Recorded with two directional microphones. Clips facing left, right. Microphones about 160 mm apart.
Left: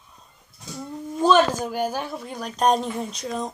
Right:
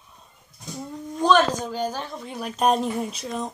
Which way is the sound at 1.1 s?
5° left (ahead or behind).